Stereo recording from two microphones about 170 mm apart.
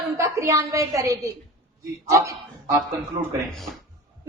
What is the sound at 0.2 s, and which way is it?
A woman's voice, 20° right (ahead or behind).